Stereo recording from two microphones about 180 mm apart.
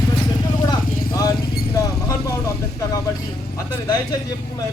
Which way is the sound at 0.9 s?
55° left (ahead or behind).